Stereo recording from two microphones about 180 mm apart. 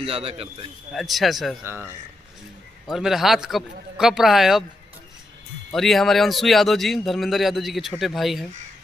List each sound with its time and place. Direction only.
0.0 s a man's voice: 35° right (ahead or behind)
0.9 s a man's voice: centre (ahead or behind)
1.6 s speech: 10° right (ahead or behind)
2.9 s a man's voice: centre (ahead or behind)
5.7 s a man's voice: centre (ahead or behind)